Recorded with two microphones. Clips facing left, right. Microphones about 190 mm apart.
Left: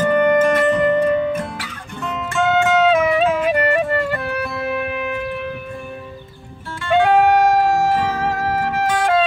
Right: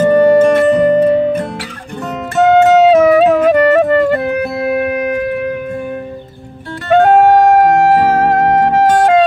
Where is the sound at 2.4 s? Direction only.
40° right (ahead or behind).